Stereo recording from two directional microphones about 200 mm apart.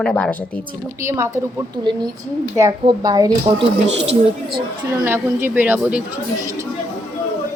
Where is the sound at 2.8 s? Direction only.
20° right (ahead or behind).